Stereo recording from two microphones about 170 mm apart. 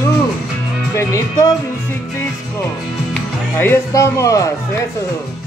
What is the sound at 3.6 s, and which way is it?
Speech, 15° left (ahead or behind).